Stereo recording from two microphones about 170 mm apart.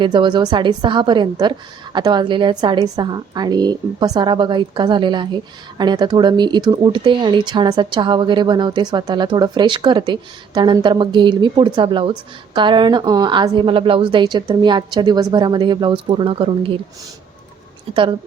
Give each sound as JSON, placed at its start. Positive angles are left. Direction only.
{"t": 0.0, "sound": "a woman's voice", "side_deg": -30}
{"t": 17.9, "sound": "speech", "side_deg": -30}